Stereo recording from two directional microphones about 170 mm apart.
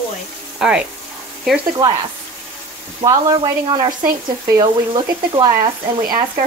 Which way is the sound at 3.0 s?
25° right (ahead or behind).